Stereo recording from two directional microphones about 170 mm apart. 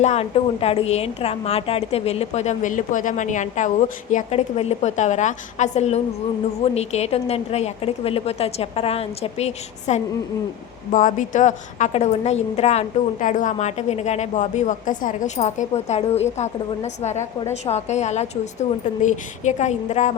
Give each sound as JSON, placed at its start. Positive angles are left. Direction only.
{"t": 0.0, "sound": "a woman's voice", "side_deg": 40}